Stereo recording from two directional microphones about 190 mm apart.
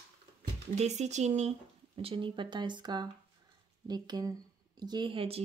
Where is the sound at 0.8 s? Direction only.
35° right (ahead or behind).